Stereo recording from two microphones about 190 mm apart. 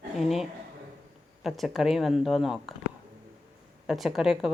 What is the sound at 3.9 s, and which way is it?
Speech, centre (ahead or behind).